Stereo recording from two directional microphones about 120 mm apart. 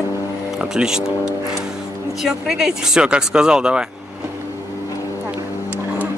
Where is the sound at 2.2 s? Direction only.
5° right (ahead or behind).